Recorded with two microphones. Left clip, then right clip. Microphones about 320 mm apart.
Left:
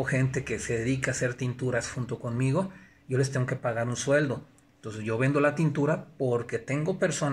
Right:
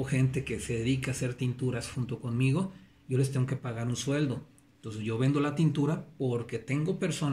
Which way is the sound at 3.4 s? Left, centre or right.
Centre.